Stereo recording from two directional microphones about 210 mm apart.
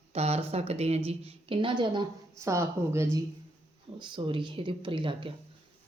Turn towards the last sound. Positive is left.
turn(degrees=-25)  # may be behind; listen again after turning